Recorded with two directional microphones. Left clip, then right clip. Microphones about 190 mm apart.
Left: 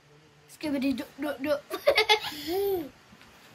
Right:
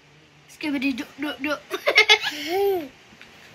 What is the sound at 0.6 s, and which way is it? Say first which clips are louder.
Speech: right 4 dB; 10° left (ahead or behind).